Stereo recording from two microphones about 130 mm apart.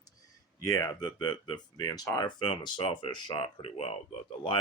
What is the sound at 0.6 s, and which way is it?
Speech, 25° left (ahead or behind).